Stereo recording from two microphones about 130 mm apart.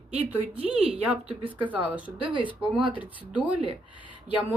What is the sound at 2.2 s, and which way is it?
Speech, 40° right (ahead or behind).